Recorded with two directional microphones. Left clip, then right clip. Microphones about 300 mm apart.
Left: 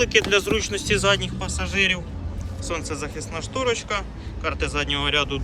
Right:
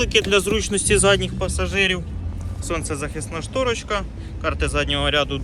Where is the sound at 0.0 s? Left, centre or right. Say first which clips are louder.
Right 1 dB; centre.